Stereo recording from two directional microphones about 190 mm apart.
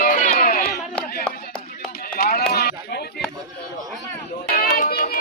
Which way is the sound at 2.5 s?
55° left (ahead or behind).